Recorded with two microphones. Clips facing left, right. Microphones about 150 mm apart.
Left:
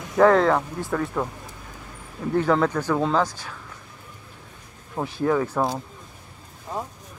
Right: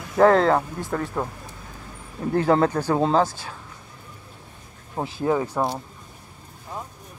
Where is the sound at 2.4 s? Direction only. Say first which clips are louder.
Right 3 dB; 35° right (ahead or behind).